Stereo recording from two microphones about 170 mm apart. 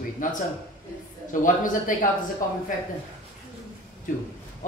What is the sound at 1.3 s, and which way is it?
Speech, 50° left (ahead or behind).